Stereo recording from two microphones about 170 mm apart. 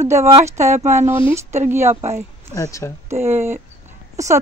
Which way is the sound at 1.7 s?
15° right (ahead or behind).